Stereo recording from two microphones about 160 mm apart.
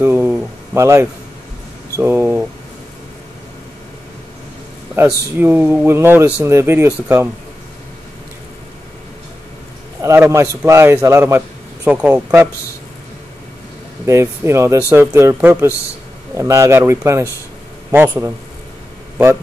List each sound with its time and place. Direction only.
0.0 s speech: 15° right (ahead or behind)
5.0 s speech: 10° right (ahead or behind)
10.0 s speech: 15° right (ahead or behind)
14.0 s speech: 15° right (ahead or behind)